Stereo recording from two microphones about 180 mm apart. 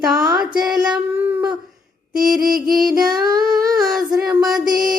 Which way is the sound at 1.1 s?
10° right (ahead or behind).